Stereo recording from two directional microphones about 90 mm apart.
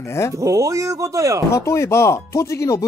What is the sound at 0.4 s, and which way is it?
A man's voice, 35° right (ahead or behind).